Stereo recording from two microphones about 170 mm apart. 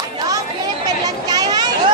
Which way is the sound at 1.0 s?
20° right (ahead or behind).